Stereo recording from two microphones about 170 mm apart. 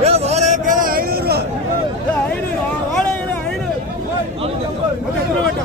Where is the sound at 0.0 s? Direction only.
40° right (ahead or behind); by 1.4 s 60° right (ahead or behind).